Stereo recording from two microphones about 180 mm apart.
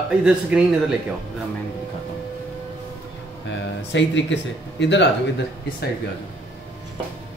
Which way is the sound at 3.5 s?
90° left.